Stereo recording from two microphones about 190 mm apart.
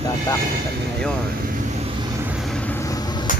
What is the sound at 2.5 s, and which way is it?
Vehicle, 10° left (ahead or behind).